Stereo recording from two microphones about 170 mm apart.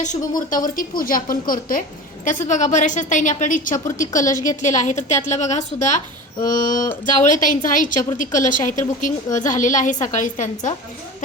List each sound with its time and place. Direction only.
0.0 s a woman's voice: 50° left (ahead or behind)